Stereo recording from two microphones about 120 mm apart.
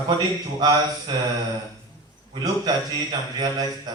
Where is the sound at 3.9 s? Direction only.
35° right (ahead or behind).